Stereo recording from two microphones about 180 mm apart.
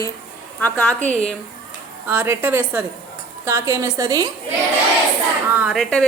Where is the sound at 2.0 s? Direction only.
10° right (ahead or behind).